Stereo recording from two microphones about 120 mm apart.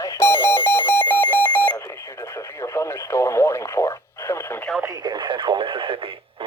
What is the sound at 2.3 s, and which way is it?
Radio, 25° left (ahead or behind).